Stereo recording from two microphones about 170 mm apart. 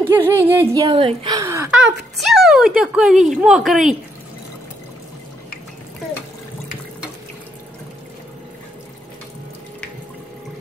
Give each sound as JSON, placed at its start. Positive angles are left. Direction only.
{"t": 0.0, "sound": "music", "side_deg": -10}
{"t": 0.8, "sound": "speech", "side_deg": -30}
{"t": 1.8, "sound": "speech", "side_deg": 0}